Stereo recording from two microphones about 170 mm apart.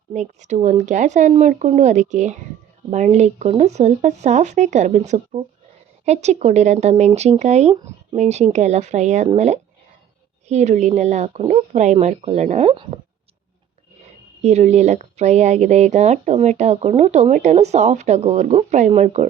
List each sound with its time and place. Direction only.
0.1 s speech: 45° right (ahead or behind)
12.7 s speech: 30° right (ahead or behind)
14.4 s speech: 40° right (ahead or behind)